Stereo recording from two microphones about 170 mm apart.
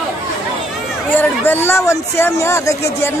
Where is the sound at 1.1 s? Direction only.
10° left (ahead or behind).